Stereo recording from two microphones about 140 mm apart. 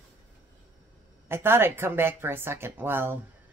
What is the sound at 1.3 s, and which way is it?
Speech, 15° right (ahead or behind).